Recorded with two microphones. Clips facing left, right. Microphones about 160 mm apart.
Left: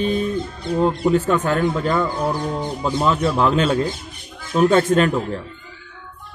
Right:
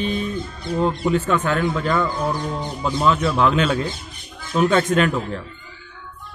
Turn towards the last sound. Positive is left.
turn(degrees=35)  # may be behind; listen again after turning